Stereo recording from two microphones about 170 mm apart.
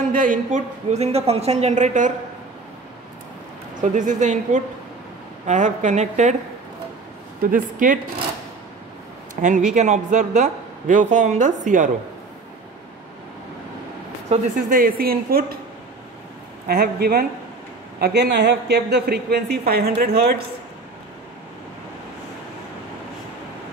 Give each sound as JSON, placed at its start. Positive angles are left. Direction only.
{"t": 0.0, "sound": "a woman's voice", "side_deg": -50}
{"t": 3.8, "sound": "a man's voice", "side_deg": -45}
{"t": 7.5, "sound": "a man's voice", "side_deg": -50}
{"t": 9.3, "sound": "a man's voice", "side_deg": -45}
{"t": 14.7, "sound": "a woman's voice", "side_deg": -55}
{"t": 16.6, "sound": "a woman's voice", "side_deg": -65}
{"t": 18.0, "sound": "a woman's voice", "side_deg": -80}